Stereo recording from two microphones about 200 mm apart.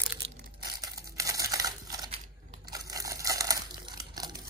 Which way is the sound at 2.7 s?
20° right (ahead or behind).